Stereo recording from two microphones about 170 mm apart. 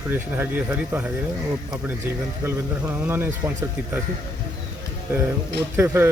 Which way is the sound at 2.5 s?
15° right (ahead or behind).